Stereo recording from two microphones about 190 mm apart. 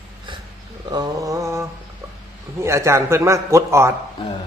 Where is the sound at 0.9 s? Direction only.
20° right (ahead or behind).